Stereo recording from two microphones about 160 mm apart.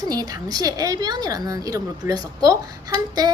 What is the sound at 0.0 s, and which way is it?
A woman's voice, 25° right (ahead or behind).